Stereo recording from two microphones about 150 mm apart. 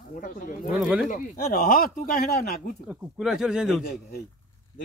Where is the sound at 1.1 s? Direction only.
75° left (ahead or behind).